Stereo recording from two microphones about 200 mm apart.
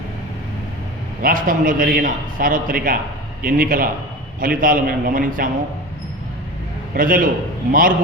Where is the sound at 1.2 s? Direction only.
45° right (ahead or behind).